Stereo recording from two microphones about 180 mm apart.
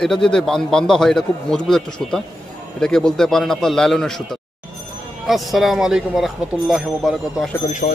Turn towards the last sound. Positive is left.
turn(degrees=40)  # may be behind; listen again after turning